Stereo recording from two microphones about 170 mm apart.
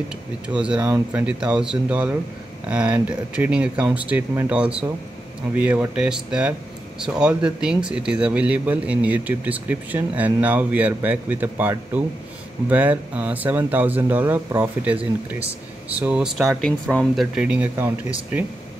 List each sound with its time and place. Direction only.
0.5 s speech: 5° right (ahead or behind)
0.8 s speech: 15° right (ahead or behind)
1.2 s speech: 5° right (ahead or behind)
16.0 s speech: 5° right (ahead or behind)